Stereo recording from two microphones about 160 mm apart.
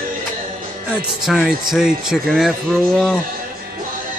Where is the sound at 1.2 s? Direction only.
Centre (ahead or behind).